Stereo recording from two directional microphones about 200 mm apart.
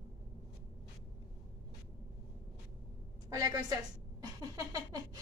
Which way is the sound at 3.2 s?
15° right (ahead or behind).